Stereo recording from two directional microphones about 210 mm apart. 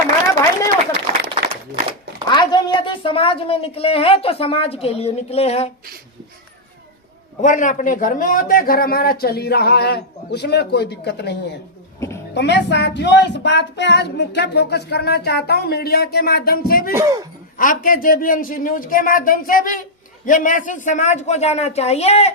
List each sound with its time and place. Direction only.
1.5 s a sound: 25° right (ahead or behind)
2.3 s a woman's voice: 20° left (ahead or behind)
7.4 s speech: 35° left (ahead or behind); by 11.3 s 55° left (ahead or behind)
11.9 s a sound: 15° left (ahead or behind)
12.3 s speech: 55° left (ahead or behind)
16.9 s speech: 15° right (ahead or behind)
17.6 s speech: 40° left (ahead or behind)